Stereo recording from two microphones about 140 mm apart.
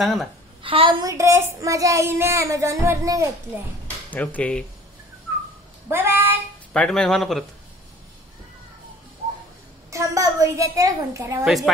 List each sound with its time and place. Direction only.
0.0 s speech: centre (ahead or behind)
0.6 s a woman's voice: 40° right (ahead or behind)
1.0 s child singing: 20° right (ahead or behind)
4.1 s speech: 10° left (ahead or behind)
5.9 s a sound: 15° right (ahead or behind)
6.7 s speech: 5° left (ahead or behind)
9.8 s child singing: 20° right (ahead or behind)
11.4 s speech: centre (ahead or behind)